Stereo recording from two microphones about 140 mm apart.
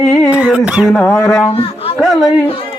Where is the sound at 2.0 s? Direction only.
Centre (ahead or behind).